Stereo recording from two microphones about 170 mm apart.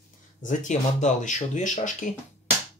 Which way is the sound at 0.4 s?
45° left (ahead or behind).